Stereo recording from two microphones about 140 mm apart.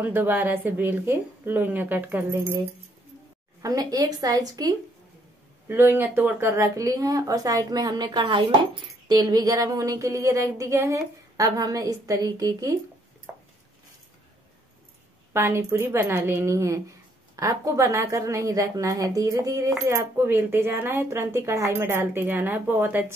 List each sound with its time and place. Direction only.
0.0 s speech: 15° right (ahead or behind)
3.6 s speech: 25° right (ahead or behind)
5.7 s speech: 15° right (ahead or behind)
15.3 s speech: 20° right (ahead or behind)